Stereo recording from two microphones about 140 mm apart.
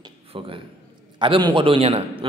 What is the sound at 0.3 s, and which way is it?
A man's voice, 40° right (ahead or behind).